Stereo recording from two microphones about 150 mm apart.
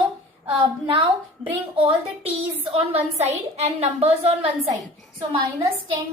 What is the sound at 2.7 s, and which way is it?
A woman's voice, 45° right (ahead or behind).